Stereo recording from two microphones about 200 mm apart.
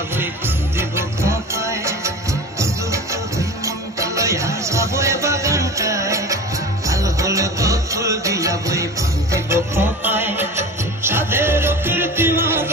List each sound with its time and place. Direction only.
0.7 s music: 15° right (ahead or behind)